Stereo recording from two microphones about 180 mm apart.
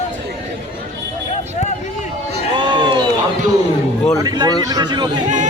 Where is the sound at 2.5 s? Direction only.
25° right (ahead or behind).